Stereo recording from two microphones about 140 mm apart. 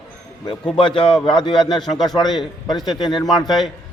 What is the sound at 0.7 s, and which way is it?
A man's voice, 35° left (ahead or behind).